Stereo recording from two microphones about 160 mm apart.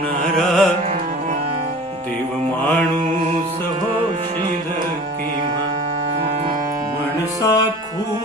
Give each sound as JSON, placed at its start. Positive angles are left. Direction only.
{"t": 0.3, "sound": "music", "side_deg": 0}
{"t": 7.4, "sound": "music", "side_deg": 20}